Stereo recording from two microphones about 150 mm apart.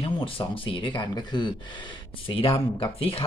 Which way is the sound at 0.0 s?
35° left (ahead or behind).